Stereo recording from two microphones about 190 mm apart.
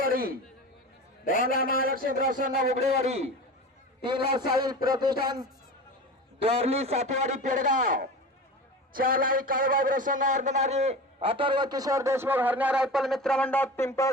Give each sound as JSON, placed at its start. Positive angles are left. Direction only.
{"t": 0.0, "sound": "chatter", "side_deg": -50}
{"t": 1.2, "sound": "a man's voice", "side_deg": 45}
{"t": 1.6, "sound": "a man's voice", "side_deg": -50}
{"t": 4.4, "sound": "a man's voice", "side_deg": -20}